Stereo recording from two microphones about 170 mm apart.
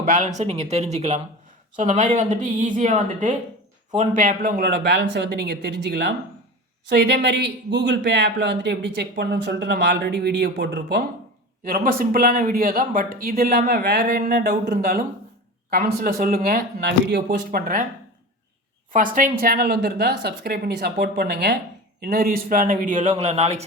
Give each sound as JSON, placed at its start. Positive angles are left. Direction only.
{"t": 0.0, "sound": "a man's voice", "side_deg": -50}
{"t": 11.6, "sound": "speech", "side_deg": -60}
{"t": 18.9, "sound": "speech", "side_deg": -50}